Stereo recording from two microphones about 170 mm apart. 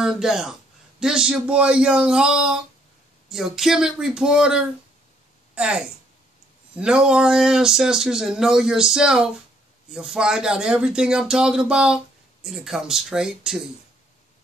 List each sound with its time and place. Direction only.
0.0 s a man's voice: 5° right (ahead or behind)